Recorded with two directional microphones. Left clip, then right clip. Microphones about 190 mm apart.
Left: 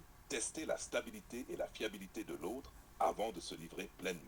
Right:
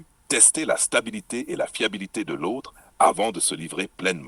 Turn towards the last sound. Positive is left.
turn(degrees=-45)  # may be behind; listen again after turning